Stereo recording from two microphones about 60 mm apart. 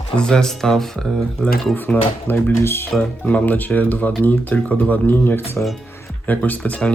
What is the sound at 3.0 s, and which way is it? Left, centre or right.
Speech, left.